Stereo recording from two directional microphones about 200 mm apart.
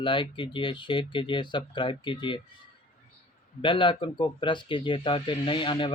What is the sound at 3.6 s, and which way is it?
Speech, 25° left (ahead or behind).